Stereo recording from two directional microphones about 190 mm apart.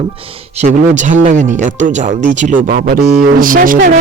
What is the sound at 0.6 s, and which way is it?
Speech, 40° right (ahead or behind).